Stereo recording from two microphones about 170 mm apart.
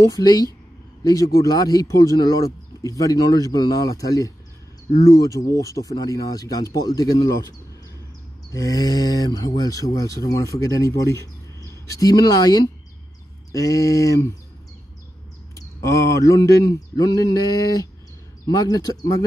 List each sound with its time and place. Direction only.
0.1 s speech: 20° left (ahead or behind)
8.5 s speech: 20° left (ahead or behind)
15.5 s speech: 20° left (ahead or behind)